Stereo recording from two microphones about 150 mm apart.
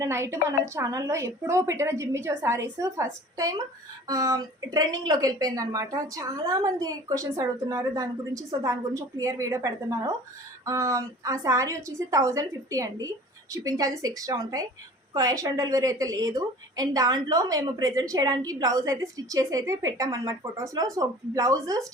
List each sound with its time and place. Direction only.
0.0 s a woman's voice: 20° right (ahead or behind)